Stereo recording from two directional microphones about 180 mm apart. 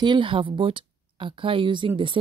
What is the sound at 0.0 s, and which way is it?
A woman's voice, 25° right (ahead or behind).